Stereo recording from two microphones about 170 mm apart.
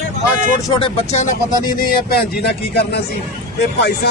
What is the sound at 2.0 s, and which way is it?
Speech, 70° left (ahead or behind).